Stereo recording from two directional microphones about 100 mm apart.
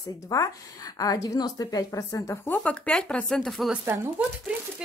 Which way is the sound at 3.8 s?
25° right (ahead or behind).